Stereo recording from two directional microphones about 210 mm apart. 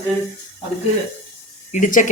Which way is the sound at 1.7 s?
40° left (ahead or behind).